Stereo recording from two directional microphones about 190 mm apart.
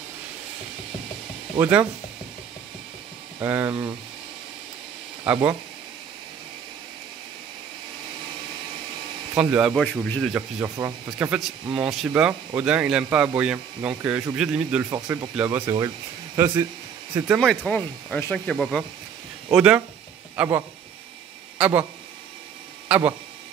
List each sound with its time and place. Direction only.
1.6 s speech: 10° right (ahead or behind)
3.3 s speech: 10° right (ahead or behind)
5.2 s speech: 5° right (ahead or behind)
9.4 s speech: 5° right (ahead or behind)
9.8 s speech: 10° left (ahead or behind)
10.3 s speech: 10° right (ahead or behind)
14.9 s speech: 20° right (ahead or behind)
17.4 s speech: 5° left (ahead or behind)
19.5 s speech: 5° right (ahead or behind)
22.8 s speech: 10° right (ahead or behind)